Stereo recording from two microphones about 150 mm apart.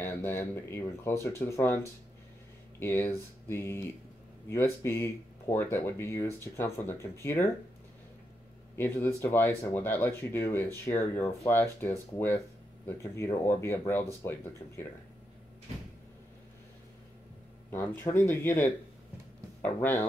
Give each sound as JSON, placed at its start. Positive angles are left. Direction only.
{"t": 0.0, "sound": "speech", "side_deg": 15}
{"t": 8.7, "sound": "speech", "side_deg": 15}
{"t": 17.6, "sound": "speech", "side_deg": 15}
{"t": 19.8, "sound": "speech", "side_deg": 15}